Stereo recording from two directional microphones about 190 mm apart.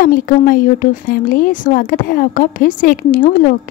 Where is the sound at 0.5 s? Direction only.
50° left (ahead or behind).